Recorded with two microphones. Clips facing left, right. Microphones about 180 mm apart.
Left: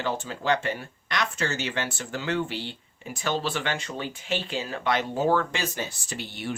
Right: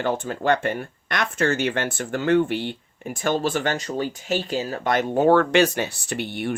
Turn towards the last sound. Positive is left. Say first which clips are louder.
# right 7 dB
turn(degrees=-55)  # may be behind; listen again after turning